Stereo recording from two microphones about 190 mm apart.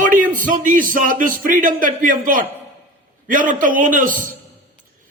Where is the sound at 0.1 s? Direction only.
45° right (ahead or behind).